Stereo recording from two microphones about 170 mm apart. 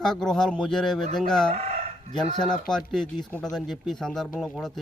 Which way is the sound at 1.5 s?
40° right (ahead or behind).